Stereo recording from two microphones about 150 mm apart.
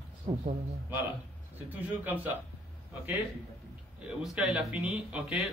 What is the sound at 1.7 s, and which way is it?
Speech, 10° right (ahead or behind).